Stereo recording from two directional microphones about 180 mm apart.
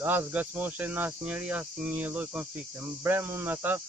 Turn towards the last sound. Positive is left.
turn(degrees=-10)  # may be behind; listen again after turning